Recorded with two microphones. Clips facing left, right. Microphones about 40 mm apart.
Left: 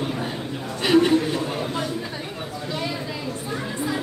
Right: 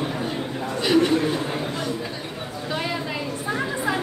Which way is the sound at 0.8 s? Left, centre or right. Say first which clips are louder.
Left 2 dB; centre.